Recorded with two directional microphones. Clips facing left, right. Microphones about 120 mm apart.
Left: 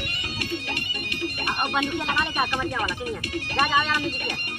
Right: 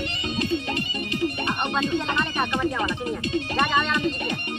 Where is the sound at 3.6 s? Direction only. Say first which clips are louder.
Even; 10° left (ahead or behind).